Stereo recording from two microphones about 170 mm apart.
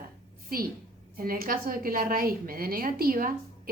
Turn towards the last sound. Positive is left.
turn(degrees=-60)  # may be behind; listen again after turning